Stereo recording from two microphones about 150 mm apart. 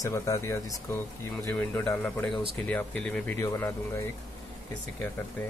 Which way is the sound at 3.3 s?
20° left (ahead or behind).